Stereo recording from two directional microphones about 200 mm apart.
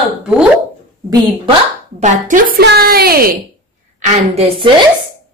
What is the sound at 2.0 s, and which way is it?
A woman's voice, 40° right (ahead or behind).